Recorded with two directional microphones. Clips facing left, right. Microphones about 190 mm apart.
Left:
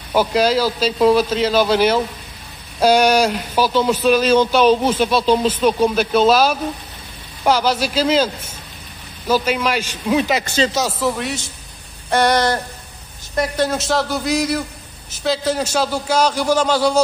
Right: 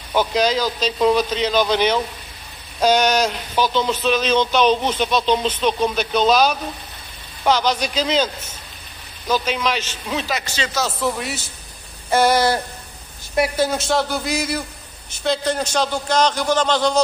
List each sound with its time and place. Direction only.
0.1 s speech: 10° left (ahead or behind)
11.0 s a man's voice: centre (ahead or behind)